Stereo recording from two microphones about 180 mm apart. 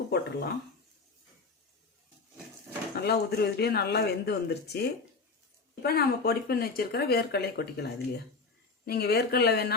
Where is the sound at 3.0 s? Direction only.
60° left (ahead or behind).